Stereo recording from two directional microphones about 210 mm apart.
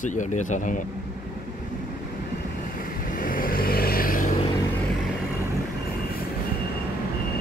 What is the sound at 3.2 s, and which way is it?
Vehicle, 40° left (ahead or behind).